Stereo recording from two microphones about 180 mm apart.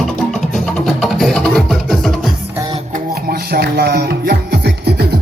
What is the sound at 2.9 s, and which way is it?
Music, 55° right (ahead or behind).